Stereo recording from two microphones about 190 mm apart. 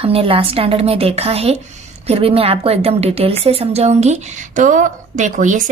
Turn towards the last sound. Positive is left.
turn(degrees=-40)  # may be behind; listen again after turning